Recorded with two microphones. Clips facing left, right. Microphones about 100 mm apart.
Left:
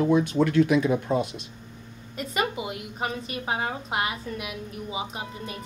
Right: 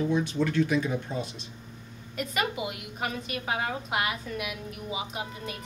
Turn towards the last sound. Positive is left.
turn(degrees=30)  # may be behind; listen again after turning